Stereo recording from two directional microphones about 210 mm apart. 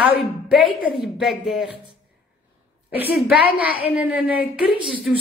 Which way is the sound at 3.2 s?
5° right (ahead or behind).